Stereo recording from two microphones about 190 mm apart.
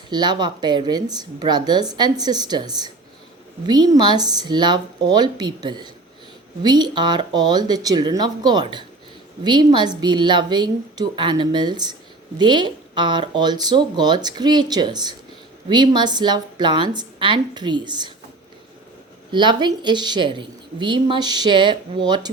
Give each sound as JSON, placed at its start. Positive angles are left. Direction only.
{"t": 0.1, "sound": "a woman's voice", "side_deg": -25}
{"t": 19.3, "sound": "a woman's voice", "side_deg": -25}